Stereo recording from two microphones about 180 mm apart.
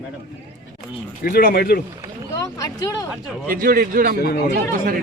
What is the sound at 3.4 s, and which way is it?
Speech, 55° right (ahead or behind).